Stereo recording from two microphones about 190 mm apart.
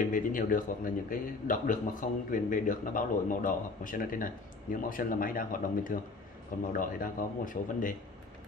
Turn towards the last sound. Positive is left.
turn(degrees=45)  # may be behind; listen again after turning